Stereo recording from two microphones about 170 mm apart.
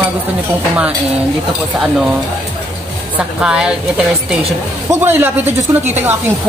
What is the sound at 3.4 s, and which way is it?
A woman's voice, 5° right (ahead or behind).